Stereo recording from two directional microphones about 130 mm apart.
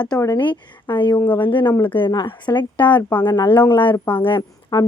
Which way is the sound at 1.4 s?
40° left (ahead or behind).